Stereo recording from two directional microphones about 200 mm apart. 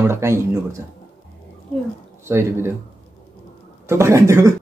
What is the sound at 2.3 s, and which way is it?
Speech, 10° right (ahead or behind).